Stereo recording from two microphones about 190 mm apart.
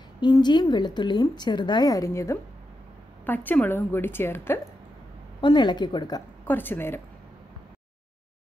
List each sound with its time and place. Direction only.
0.2 s a woman's voice: 25° left (ahead or behind)
5.4 s a woman's voice: 25° left (ahead or behind)
6.4 s a woman's voice: 10° left (ahead or behind)